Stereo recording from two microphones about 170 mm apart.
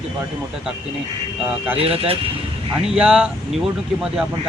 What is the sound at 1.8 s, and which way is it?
Speech, 35° right (ahead or behind).